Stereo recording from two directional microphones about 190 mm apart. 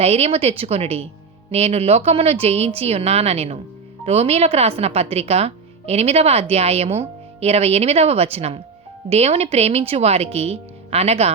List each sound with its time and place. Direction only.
0.0 s speech: 35° right (ahead or behind)